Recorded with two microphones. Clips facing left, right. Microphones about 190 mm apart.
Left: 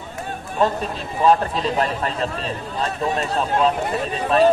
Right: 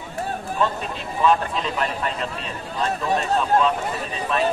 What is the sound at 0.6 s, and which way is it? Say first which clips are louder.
Speech: left 5 dB; 40° left (ahead or behind).